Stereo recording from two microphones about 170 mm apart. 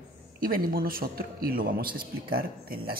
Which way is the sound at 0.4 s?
55° right (ahead or behind).